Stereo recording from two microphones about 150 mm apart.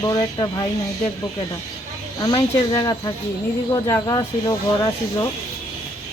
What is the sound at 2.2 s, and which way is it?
Speech, 25° left (ahead or behind).